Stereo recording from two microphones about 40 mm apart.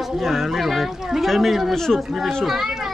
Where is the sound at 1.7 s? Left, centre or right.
Centre.